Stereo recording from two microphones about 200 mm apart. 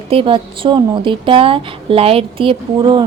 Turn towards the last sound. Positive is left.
turn(degrees=-25)  # may be behind; listen again after turning